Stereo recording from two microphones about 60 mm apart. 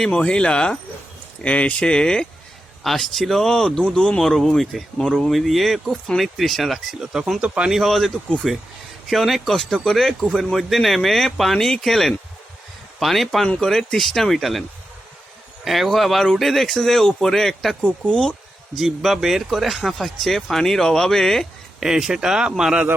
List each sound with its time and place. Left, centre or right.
0.1 s speech: centre
2.8 s speech: centre
7.0 s speech: centre
7.7 s speech: centre
15.6 s speech: centre
18.8 s speech: centre
21.8 s speech: centre